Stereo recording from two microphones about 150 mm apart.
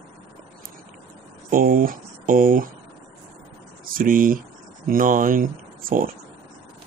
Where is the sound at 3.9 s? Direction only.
70° right (ahead or behind).